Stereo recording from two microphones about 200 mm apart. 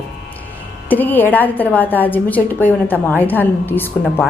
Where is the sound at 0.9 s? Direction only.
10° left (ahead or behind).